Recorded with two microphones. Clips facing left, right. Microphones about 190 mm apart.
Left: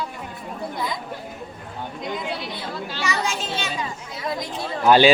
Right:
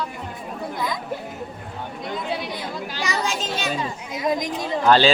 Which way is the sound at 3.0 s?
35° right (ahead or behind).